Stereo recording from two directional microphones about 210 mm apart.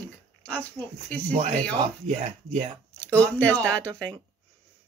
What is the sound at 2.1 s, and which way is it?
Speech, 35° right (ahead or behind).